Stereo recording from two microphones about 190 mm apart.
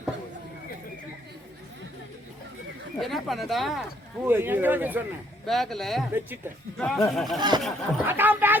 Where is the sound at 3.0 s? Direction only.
Centre (ahead or behind).